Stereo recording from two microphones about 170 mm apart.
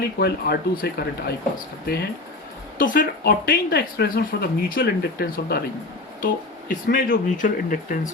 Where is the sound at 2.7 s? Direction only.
55° left (ahead or behind).